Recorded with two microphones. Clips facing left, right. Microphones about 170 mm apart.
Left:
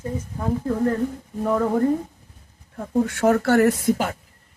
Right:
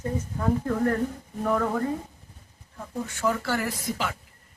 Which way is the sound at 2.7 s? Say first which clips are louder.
Left 11 dB; 55° left (ahead or behind).